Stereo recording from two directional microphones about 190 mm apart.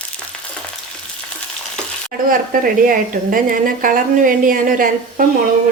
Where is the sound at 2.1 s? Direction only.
50° right (ahead or behind).